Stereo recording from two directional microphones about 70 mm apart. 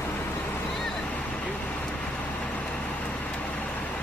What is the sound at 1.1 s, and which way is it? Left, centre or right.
Vehicle, centre.